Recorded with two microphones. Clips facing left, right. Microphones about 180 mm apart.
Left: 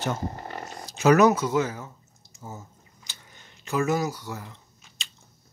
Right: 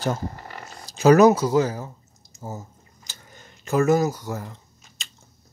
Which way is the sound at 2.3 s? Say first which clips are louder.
Right 5 dB; 40° right (ahead or behind).